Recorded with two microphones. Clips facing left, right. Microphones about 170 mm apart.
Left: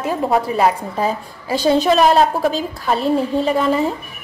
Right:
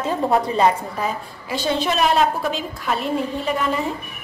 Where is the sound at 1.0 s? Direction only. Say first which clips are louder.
Left 5 dB; 40° left (ahead or behind).